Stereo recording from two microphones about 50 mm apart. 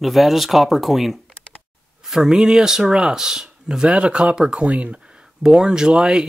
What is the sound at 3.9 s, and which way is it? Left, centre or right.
Speech, right.